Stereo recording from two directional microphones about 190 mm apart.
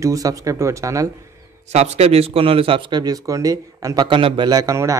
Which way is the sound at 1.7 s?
35° right (ahead or behind).